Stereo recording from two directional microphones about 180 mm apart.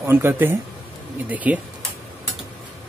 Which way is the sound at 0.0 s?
10° right (ahead or behind).